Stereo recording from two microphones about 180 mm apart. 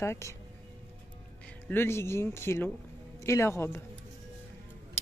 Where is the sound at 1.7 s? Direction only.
10° left (ahead or behind).